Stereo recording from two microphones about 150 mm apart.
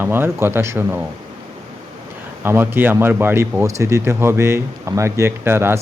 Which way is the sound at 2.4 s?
15° right (ahead or behind).